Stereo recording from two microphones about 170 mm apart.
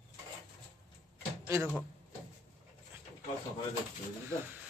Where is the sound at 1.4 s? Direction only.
15° right (ahead or behind).